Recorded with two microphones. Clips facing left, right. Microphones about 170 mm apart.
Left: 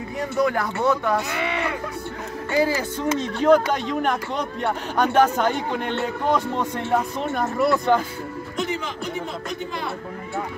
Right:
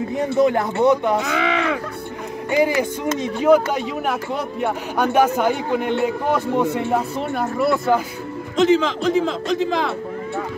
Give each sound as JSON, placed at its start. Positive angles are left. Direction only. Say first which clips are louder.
{"t": 0.2, "sound": "speech", "louder": "right 4 dB", "side_deg": -20}
{"t": 1.4, "sound": "crow", "louder": "right 5 dB", "side_deg": -90}
{"t": 2.5, "sound": "speech", "louder": "right 3 dB", "side_deg": -15}
{"t": 8.5, "sound": "a man's voice", "louder": "right 12 dB", "side_deg": -90}